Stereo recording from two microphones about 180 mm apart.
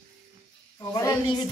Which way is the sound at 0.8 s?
20° left (ahead or behind).